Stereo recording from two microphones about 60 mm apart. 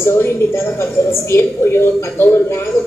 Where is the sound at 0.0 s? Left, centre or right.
Left.